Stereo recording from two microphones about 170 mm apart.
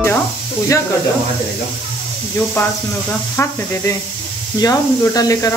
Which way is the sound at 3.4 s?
15° left (ahead or behind).